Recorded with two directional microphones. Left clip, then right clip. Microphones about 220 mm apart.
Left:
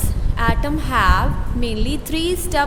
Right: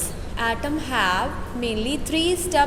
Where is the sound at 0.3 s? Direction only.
20° left (ahead or behind).